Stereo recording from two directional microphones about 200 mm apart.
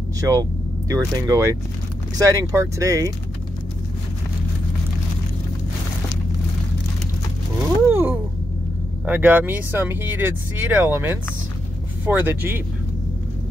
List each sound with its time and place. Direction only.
0.2 s speech: 15° right (ahead or behind)
7.8 s a sound: 10° right (ahead or behind)
9.0 s speech: 10° right (ahead or behind)